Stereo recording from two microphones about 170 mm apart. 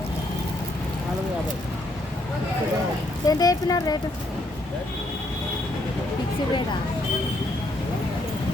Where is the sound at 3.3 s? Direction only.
20° left (ahead or behind).